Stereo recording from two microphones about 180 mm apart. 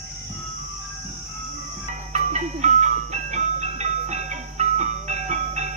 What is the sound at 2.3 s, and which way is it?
Music, 40° right (ahead or behind).